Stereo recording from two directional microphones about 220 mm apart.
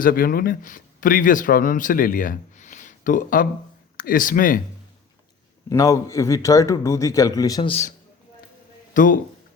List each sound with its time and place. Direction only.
0.0 s speech: 40° left (ahead or behind)
5.6 s a man's voice: 15° left (ahead or behind); by 9.2 s 35° left (ahead or behind)